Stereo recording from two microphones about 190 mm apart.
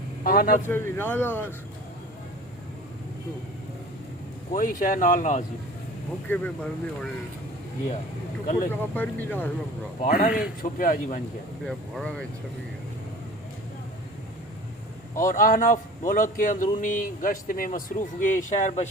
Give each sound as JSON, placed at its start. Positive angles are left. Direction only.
{"t": 0.3, "sound": "speech", "side_deg": 45}
{"t": 0.7, "sound": "speech", "side_deg": 10}
{"t": 4.5, "sound": "speech", "side_deg": 45}
{"t": 6.2, "sound": "speech", "side_deg": 10}
{"t": 8.7, "sound": "speech", "side_deg": 10}
{"t": 10.0, "sound": "speech", "side_deg": 45}
{"t": 11.6, "sound": "speech", "side_deg": 5}
{"t": 15.1, "sound": "speech", "side_deg": 45}